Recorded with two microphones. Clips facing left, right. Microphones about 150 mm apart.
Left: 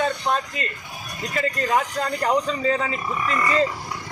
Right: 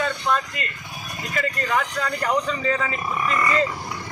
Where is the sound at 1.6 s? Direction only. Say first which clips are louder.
Left 3 dB; 30° left (ahead or behind).